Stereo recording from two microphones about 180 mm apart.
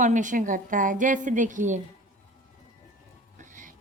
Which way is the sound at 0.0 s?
45° right (ahead or behind).